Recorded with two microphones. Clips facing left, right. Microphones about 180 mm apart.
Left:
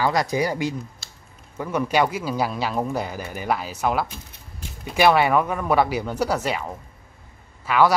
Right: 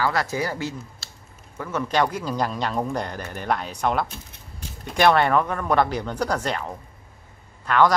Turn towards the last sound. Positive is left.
turn(degrees=10)  # may be behind; listen again after turning